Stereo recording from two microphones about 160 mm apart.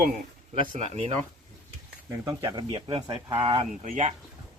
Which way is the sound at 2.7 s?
35° right (ahead or behind).